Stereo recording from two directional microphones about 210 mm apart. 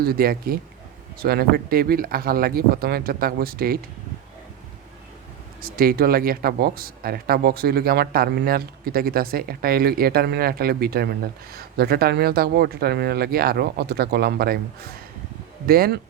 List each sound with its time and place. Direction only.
0.0 s speech: 45° right (ahead or behind)
5.6 s speech: 45° right (ahead or behind)